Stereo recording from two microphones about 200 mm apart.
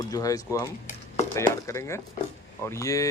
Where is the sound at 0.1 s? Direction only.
15° left (ahead or behind).